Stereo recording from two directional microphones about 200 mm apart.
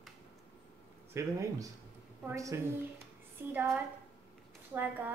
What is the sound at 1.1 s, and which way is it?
A woman's voice, 15° right (ahead or behind).